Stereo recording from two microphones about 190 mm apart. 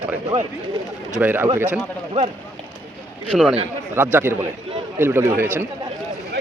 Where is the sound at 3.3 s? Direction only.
Centre (ahead or behind).